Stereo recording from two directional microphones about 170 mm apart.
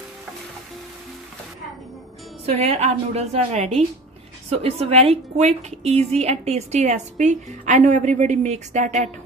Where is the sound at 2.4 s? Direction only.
40° right (ahead or behind).